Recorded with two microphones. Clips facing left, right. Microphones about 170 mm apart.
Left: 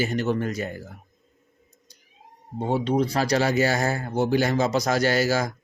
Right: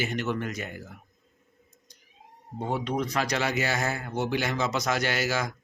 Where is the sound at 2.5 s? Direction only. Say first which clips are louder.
Left 6 dB; 30° left (ahead or behind).